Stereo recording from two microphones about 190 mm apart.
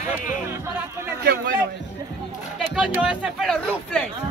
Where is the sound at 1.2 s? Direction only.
60° right (ahead or behind).